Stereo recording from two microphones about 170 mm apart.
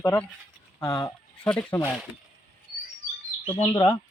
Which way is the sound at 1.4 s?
10° left (ahead or behind).